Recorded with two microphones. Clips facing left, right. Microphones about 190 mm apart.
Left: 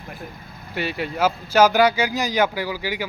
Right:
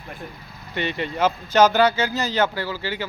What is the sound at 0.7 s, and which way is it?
Speech, 5° left (ahead or behind).